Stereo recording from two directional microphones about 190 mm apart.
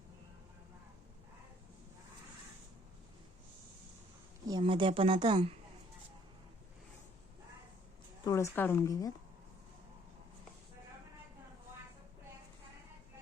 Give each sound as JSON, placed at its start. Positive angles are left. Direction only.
{"t": 4.4, "sound": "a woman's voice", "side_deg": -25}
{"t": 8.2, "sound": "a woman's voice", "side_deg": 15}